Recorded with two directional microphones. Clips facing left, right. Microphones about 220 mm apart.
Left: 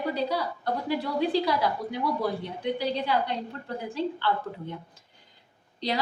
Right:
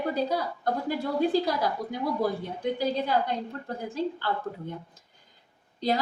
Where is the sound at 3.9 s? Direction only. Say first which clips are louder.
Left 2 dB; 45° right (ahead or behind).